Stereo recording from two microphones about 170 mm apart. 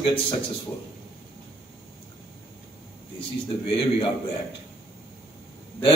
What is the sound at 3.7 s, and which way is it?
Speech, 30° left (ahead or behind).